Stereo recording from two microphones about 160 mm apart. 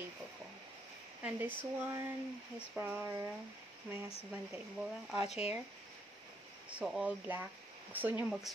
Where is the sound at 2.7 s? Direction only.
10° right (ahead or behind).